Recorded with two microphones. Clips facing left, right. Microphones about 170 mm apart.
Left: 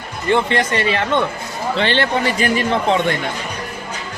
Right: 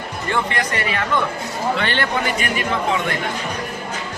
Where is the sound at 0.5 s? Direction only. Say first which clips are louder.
Left 5 dB; 25° left (ahead or behind).